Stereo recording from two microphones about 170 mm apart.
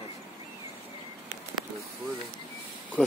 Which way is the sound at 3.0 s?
5° left (ahead or behind).